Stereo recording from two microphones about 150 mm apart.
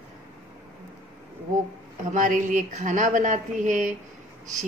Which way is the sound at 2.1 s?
60° right (ahead or behind).